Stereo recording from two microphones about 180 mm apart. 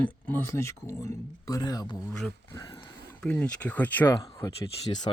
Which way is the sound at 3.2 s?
5° left (ahead or behind).